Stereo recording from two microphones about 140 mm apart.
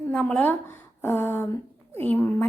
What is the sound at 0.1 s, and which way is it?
A woman's voice, 5° left (ahead or behind).